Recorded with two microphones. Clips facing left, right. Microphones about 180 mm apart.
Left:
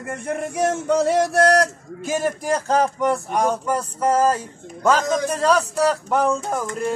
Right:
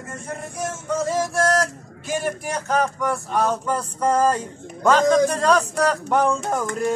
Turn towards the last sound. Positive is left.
turn(degrees=0)  # may be behind; listen again after turning